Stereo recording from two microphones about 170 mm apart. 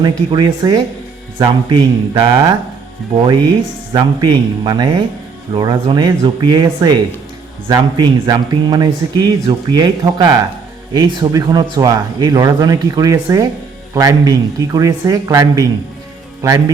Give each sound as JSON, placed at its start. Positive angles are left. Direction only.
{"t": 0.0, "sound": "a man's voice", "side_deg": -25}
{"t": 3.9, "sound": "a man's voice", "side_deg": -25}